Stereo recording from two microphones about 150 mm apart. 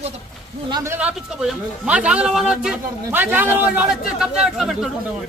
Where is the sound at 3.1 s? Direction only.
15° right (ahead or behind).